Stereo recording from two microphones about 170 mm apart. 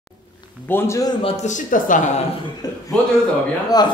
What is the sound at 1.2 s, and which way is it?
A man's voice, 40° left (ahead or behind).